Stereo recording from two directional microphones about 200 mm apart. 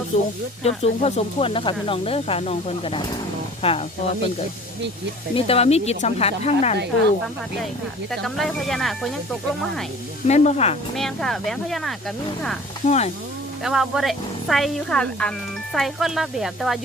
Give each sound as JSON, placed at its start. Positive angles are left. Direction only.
{"t": 0.1, "sound": "speech", "side_deg": 35}
{"t": 5.3, "sound": "speech", "side_deg": 30}
{"t": 8.1, "sound": "speech", "side_deg": 0}
{"t": 10.2, "sound": "speech", "side_deg": 35}
{"t": 10.9, "sound": "speech", "side_deg": 0}
{"t": 12.8, "sound": "speech", "side_deg": 35}
{"t": 13.7, "sound": "speech", "side_deg": 0}